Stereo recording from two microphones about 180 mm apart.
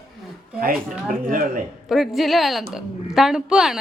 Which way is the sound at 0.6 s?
50° right (ahead or behind).